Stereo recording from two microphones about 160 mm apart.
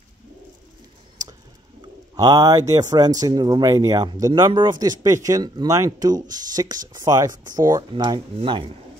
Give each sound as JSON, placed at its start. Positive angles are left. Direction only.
{"t": 2.1, "sound": "speech", "side_deg": -25}